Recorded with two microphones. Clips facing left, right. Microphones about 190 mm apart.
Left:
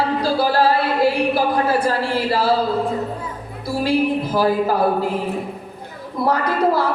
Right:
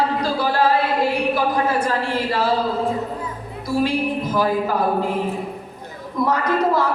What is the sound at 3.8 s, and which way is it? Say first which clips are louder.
Speech: left 3 dB; 35° left (ahead or behind).